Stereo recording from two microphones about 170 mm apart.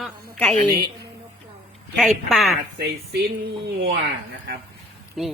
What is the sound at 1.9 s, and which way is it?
Speech, centre (ahead or behind).